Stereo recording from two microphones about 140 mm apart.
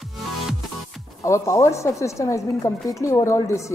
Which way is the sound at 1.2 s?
20° left (ahead or behind).